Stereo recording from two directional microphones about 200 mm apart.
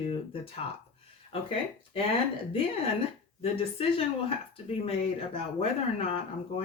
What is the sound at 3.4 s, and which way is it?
Speech, 30° left (ahead or behind).